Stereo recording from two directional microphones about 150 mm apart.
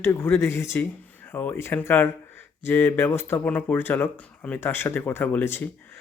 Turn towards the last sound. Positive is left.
turn(degrees=15)  # may be behind; listen again after turning